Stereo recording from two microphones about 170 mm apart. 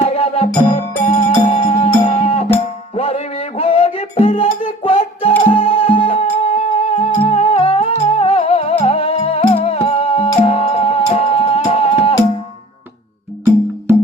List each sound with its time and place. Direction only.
0.0 s music: 35° left (ahead or behind)